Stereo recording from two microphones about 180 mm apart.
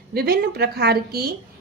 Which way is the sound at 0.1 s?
60° right (ahead or behind).